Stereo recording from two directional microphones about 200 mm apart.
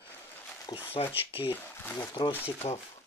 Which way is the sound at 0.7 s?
20° left (ahead or behind).